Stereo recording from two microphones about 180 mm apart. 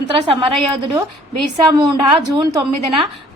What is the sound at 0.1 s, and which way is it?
A woman's voice, 30° right (ahead or behind).